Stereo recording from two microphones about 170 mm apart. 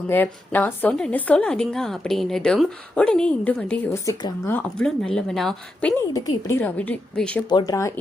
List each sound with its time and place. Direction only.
0.1 s a woman's voice: 10° left (ahead or behind)
6.1 s a woman's voice: 15° left (ahead or behind)
7.5 s a woman's voice: 20° left (ahead or behind)